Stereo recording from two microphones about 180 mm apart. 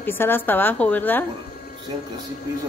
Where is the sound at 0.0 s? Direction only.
10° left (ahead or behind).